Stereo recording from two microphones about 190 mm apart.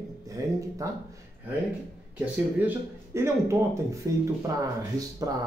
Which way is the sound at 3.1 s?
15° right (ahead or behind).